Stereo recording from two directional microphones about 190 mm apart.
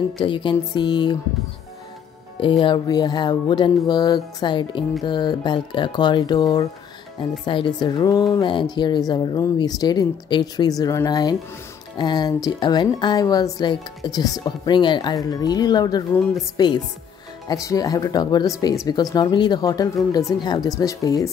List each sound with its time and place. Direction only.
0.2 s speech: 25° left (ahead or behind)
2.6 s speech: 25° left (ahead or behind)